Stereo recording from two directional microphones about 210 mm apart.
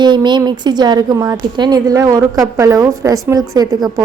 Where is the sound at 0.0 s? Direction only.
20° right (ahead or behind).